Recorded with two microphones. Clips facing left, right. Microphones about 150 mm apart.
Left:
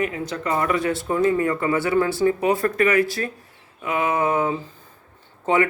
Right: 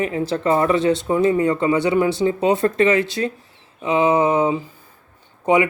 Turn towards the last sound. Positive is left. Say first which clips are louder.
# right 3 dB
turn(degrees=-15)  # may be behind; listen again after turning